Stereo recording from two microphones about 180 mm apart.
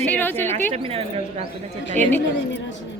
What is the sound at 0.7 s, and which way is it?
Speech, 35° right (ahead or behind).